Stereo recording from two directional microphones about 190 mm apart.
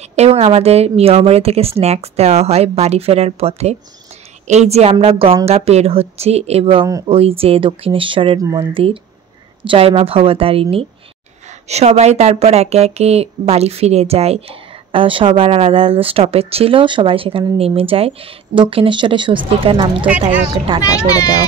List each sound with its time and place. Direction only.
0.1 s speech: 35° right (ahead or behind)
20.1 s a woman's voice: 10° right (ahead or behind)
20.8 s a child's voice: 20° left (ahead or behind)